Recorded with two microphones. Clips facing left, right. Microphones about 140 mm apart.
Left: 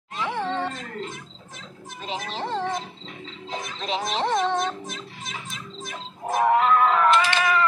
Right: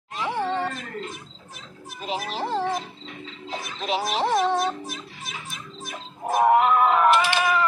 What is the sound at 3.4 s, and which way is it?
Music, 5° right (ahead or behind).